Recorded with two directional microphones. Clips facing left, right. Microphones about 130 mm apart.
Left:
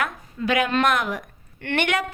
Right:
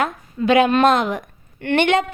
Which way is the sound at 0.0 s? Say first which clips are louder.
Right 5 dB; 25° right (ahead or behind).